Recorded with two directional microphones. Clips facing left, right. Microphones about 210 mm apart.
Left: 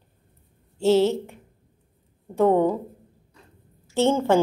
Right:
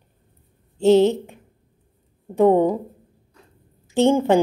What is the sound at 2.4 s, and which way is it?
Speech, 15° right (ahead or behind).